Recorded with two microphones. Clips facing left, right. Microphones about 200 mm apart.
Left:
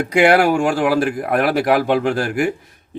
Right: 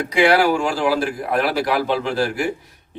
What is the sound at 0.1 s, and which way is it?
Speech, 50° left (ahead or behind).